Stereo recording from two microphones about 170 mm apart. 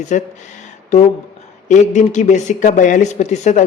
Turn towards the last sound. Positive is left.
turn(degrees=45)  # may be behind; listen again after turning